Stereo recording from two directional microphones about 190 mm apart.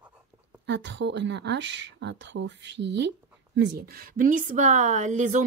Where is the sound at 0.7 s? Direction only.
70° right (ahead or behind).